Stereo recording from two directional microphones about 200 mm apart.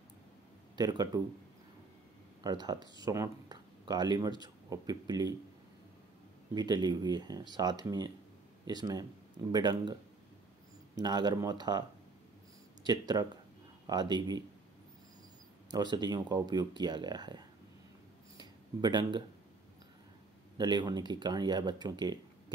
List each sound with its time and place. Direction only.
0.7 s speech: 20° right (ahead or behind)
2.4 s speech: 20° right (ahead or behind)
6.5 s speech: 20° right (ahead or behind)
11.0 s speech: 20° right (ahead or behind)
12.8 s speech: 20° right (ahead or behind)
15.7 s speech: 20° right (ahead or behind)
18.4 s a sound: 20° right (ahead or behind)
20.5 s speech: 20° right (ahead or behind)